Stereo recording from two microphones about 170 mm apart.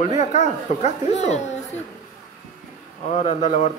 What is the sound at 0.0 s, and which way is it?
Speech, 45° left (ahead or behind).